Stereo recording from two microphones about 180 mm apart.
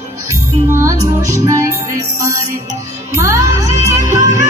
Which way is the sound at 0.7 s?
15° right (ahead or behind).